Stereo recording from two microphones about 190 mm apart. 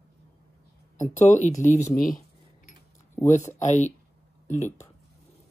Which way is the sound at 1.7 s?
15° left (ahead or behind).